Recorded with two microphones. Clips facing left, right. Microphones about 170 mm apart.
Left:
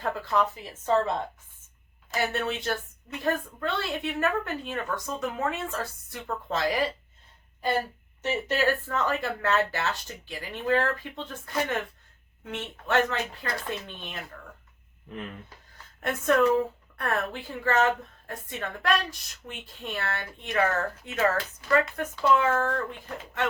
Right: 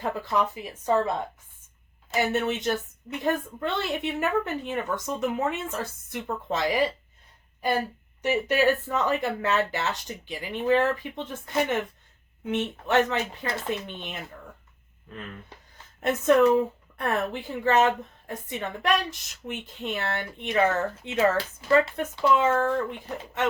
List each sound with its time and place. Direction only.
0.0 s a woman's voice: 20° right (ahead or behind)
2.3 s a woman's voice: 20° right (ahead or behind)
8.2 s a woman's voice: 10° right (ahead or behind)
16.0 s a woman's voice: 20° right (ahead or behind)